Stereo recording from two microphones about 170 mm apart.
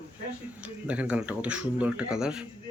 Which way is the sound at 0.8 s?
10° right (ahead or behind).